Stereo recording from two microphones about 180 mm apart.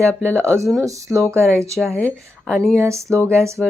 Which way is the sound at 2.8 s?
15° right (ahead or behind).